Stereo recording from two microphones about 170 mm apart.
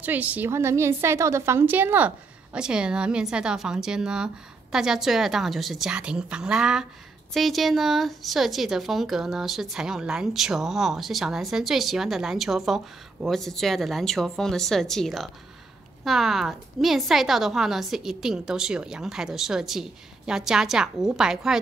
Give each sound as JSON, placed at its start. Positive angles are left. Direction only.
{"t": 0.0, "sound": "a woman's voice", "side_deg": -10}